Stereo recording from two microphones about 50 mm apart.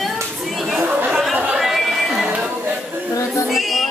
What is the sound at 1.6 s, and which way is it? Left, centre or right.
Chatter, centre.